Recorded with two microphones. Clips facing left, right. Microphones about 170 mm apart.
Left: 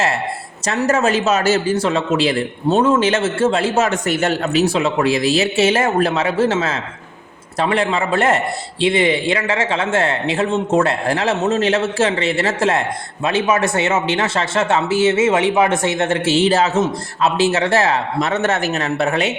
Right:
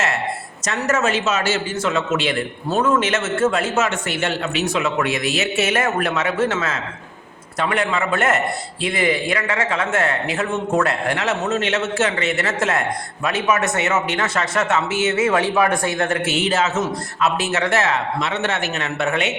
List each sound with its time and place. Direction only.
0.7 s a man's voice: 35° left (ahead or behind)